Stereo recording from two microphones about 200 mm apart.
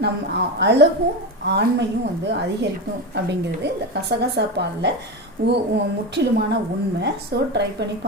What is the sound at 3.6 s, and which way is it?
A woman's voice, 60° right (ahead or behind).